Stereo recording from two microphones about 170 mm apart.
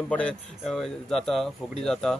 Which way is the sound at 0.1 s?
5° left (ahead or behind).